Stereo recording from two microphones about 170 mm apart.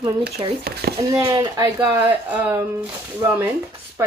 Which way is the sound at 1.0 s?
15° right (ahead or behind).